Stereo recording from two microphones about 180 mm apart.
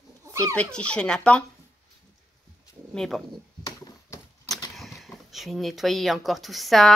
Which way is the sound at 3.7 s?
15° left (ahead or behind).